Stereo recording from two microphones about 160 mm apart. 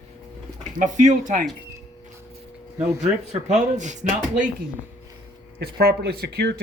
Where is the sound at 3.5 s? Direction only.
50° right (ahead or behind).